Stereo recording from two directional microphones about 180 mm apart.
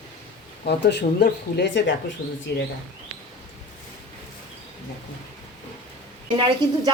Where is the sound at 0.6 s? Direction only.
70° left (ahead or behind).